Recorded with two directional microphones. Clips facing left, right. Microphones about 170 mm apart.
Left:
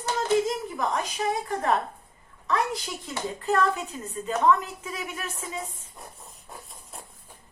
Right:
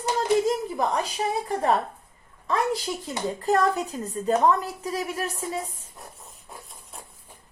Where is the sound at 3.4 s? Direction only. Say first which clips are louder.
Right 2 dB; 40° right (ahead or behind).